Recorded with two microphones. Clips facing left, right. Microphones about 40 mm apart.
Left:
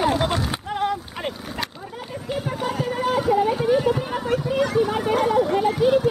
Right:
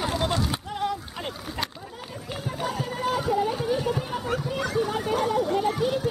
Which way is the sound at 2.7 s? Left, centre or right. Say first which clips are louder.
Left 6 dB; centre.